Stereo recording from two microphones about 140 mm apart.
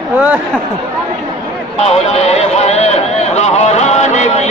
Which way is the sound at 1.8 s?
50° left (ahead or behind).